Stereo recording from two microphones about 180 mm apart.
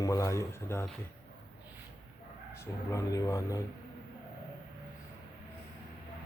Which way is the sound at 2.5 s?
15° left (ahead or behind).